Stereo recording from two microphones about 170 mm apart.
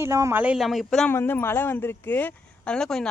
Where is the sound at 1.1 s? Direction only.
15° left (ahead or behind).